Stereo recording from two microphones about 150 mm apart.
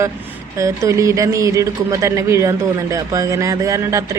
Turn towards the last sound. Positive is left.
turn(degrees=-20)  # may be behind; listen again after turning